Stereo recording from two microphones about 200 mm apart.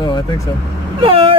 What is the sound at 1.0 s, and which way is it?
Vehicle, 25° right (ahead or behind).